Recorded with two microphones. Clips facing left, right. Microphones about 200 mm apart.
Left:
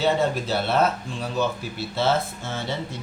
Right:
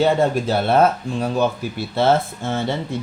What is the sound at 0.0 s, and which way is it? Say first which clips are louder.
Speech: right 5 dB; 50° right (ahead or behind).